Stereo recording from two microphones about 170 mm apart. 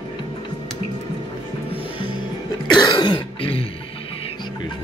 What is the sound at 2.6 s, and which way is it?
Throat clearing, 25° left (ahead or behind).